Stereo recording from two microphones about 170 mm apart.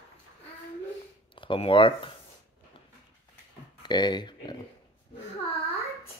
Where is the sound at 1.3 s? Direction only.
30° left (ahead or behind).